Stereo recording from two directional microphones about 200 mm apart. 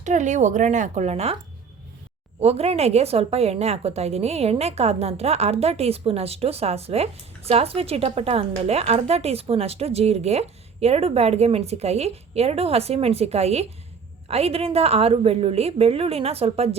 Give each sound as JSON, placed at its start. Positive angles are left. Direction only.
{"t": 0.0, "sound": "a woman's voice", "side_deg": -35}
{"t": 2.4, "sound": "a woman's voice", "side_deg": -30}